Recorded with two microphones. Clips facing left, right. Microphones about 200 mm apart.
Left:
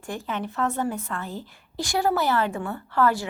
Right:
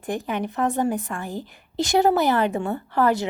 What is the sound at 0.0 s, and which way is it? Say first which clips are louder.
A woman's voice: right 4 dB; 20° right (ahead or behind).